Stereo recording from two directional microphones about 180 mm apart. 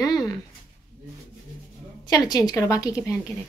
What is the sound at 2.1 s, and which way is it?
A woman's voice, 20° left (ahead or behind).